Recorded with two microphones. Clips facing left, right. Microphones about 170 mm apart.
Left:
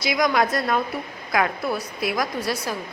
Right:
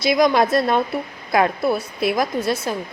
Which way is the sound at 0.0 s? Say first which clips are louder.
Right 5 dB; 30° right (ahead or behind).